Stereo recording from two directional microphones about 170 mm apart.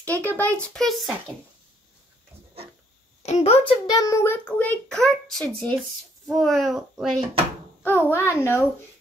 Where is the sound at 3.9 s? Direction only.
20° left (ahead or behind); by 5.8 s 5° left (ahead or behind).